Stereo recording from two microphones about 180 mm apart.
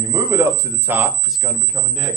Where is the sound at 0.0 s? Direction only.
15° right (ahead or behind); by 1.9 s 5° left (ahead or behind).